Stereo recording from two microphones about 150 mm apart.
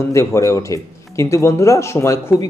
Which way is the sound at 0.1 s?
20° left (ahead or behind).